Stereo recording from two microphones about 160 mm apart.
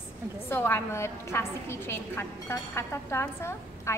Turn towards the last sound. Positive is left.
turn(degrees=15)  # may be behind; listen again after turning